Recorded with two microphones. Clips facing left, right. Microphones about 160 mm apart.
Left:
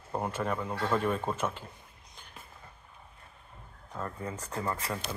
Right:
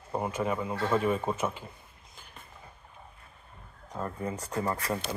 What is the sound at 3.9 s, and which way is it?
Speech, 20° right (ahead or behind).